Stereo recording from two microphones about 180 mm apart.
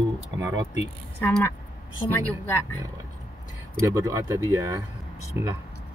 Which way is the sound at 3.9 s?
15° right (ahead or behind).